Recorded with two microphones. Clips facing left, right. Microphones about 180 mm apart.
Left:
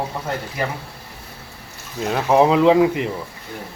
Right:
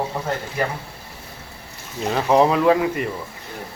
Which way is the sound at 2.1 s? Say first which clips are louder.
Left 1 dB; 15° left (ahead or behind).